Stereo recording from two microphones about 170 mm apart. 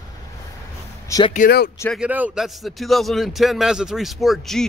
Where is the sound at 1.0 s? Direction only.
20° left (ahead or behind).